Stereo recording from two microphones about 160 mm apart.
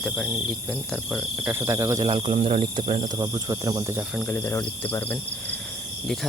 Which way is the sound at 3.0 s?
25° right (ahead or behind).